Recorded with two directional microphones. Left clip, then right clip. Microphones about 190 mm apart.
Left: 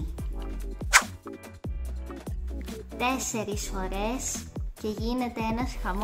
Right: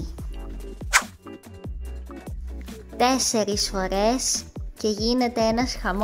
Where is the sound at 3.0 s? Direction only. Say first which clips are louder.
Right 8 dB; 35° right (ahead or behind).